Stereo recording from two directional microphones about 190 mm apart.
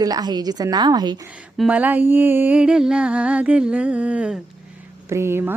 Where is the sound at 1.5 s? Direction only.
5° right (ahead or behind).